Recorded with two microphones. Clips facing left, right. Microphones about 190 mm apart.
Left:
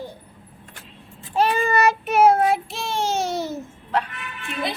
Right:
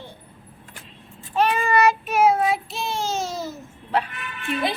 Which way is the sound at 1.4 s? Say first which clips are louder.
Left 1 dB; 30° left (ahead or behind).